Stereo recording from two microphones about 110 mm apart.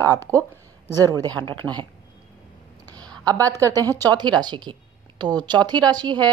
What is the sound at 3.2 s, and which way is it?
Speech, 30° right (ahead or behind).